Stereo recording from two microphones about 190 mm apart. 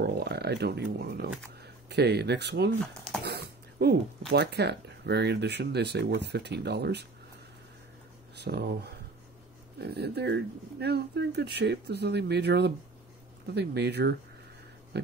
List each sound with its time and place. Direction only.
0.0 s speech: 60° right (ahead or behind)
2.9 s speech: centre (ahead or behind)
3.3 s a sound: 55° right (ahead or behind)
4.3 s speech: 60° right (ahead or behind)
8.4 s speech: 60° right (ahead or behind)
9.8 s speech: 60° right (ahead or behind)